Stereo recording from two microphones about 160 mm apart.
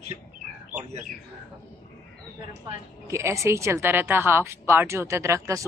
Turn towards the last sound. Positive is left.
turn(degrees=-20)  # may be behind; listen again after turning